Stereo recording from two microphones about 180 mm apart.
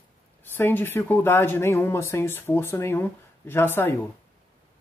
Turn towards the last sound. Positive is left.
turn(degrees=10)  # may be behind; listen again after turning